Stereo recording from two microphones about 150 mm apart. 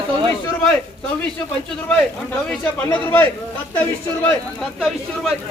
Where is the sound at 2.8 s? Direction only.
15° left (ahead or behind).